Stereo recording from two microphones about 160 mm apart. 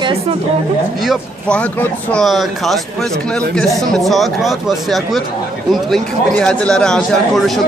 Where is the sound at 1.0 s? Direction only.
5° left (ahead or behind).